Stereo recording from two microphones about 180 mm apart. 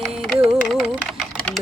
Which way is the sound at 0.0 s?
Centre (ahead or behind).